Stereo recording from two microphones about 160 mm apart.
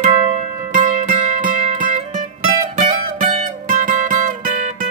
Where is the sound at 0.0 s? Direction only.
50° right (ahead or behind).